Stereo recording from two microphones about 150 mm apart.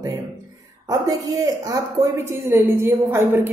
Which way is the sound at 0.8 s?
25° right (ahead or behind).